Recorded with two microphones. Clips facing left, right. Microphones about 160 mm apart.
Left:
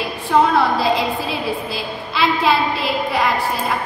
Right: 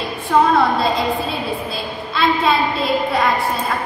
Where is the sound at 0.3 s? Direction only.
Centre (ahead or behind).